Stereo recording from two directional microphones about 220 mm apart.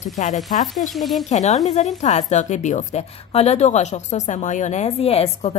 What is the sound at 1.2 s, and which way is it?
A woman's voice, 30° left (ahead or behind).